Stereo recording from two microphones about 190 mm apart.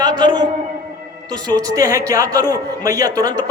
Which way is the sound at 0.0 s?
20° right (ahead or behind).